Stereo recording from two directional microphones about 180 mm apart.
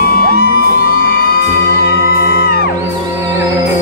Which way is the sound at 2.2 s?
60° left (ahead or behind).